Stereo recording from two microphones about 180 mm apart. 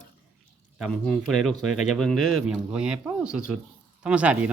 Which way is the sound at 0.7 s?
Centre (ahead or behind).